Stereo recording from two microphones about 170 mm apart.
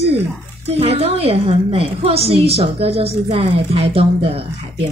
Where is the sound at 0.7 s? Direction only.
35° right (ahead or behind).